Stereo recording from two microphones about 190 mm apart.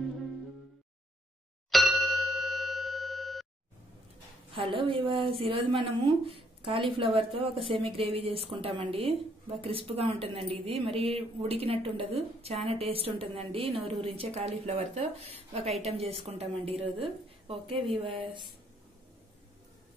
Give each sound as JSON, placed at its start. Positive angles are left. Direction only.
{"t": 1.7, "sound": "ding", "side_deg": 0}
{"t": 4.5, "sound": "a woman's voice", "side_deg": -30}